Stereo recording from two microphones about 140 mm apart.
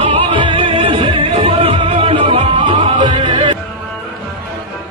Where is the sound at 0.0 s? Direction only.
35° right (ahead or behind).